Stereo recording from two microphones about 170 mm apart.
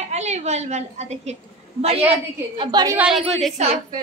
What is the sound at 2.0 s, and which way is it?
Speech, 30° right (ahead or behind).